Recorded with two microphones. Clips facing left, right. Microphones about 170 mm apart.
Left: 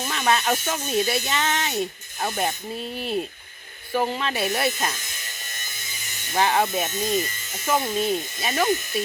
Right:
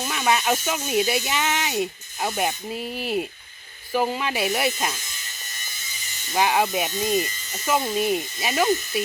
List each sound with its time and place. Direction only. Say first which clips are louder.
0.0 s speech: even; 10° right (ahead or behind)
6.3 s speech: even; 10° right (ahead or behind)